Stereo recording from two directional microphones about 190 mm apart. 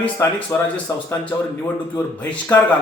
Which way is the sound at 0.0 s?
10° left (ahead or behind).